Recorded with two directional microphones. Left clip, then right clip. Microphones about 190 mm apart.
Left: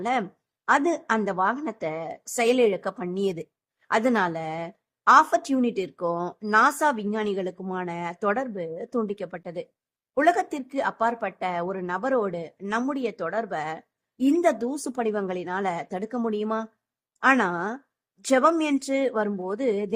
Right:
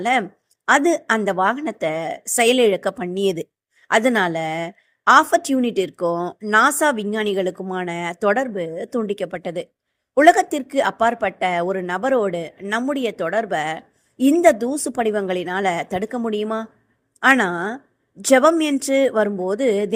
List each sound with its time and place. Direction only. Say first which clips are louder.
0.0 s a woman's voice: right 7 dB; 10° right (ahead or behind)